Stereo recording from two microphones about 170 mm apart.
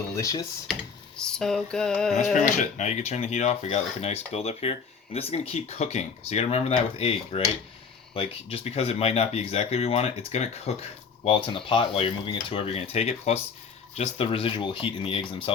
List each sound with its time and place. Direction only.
0.2 s speech: 20° left (ahead or behind)
0.7 s computer keyboard: 5° left (ahead or behind)
1.7 s music: 5° left (ahead or behind)
2.3 s speech: 45° left (ahead or behind)